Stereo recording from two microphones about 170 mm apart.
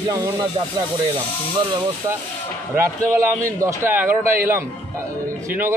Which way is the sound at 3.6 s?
15° right (ahead or behind).